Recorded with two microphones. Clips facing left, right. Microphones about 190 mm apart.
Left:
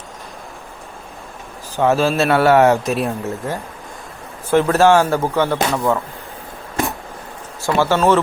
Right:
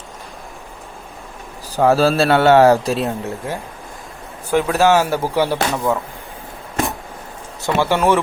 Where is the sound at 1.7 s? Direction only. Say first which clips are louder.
Right 2 dB; 35° right (ahead or behind).